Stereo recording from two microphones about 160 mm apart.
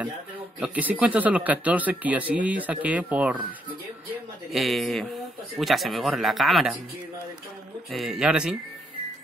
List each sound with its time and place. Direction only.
0.6 s speech: 10° right (ahead or behind)
4.5 s speech: centre (ahead or behind)
7.9 s speech: centre (ahead or behind)